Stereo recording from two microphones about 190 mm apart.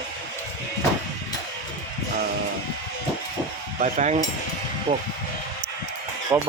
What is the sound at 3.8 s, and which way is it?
Speech, 40° right (ahead or behind).